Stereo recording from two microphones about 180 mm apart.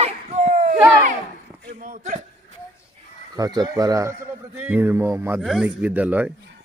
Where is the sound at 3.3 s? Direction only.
20° right (ahead or behind).